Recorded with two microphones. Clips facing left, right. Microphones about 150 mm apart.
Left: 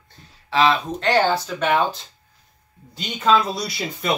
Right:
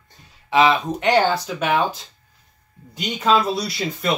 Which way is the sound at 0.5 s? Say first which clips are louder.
Right 2 dB; 20° right (ahead or behind).